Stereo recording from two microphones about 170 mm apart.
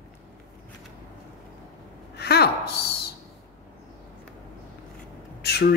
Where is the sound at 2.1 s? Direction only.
70° left (ahead or behind).